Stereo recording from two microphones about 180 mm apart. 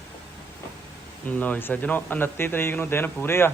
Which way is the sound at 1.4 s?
10° left (ahead or behind).